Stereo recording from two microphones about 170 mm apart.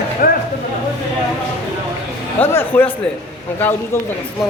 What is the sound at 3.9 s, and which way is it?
Speech, 15° left (ahead or behind).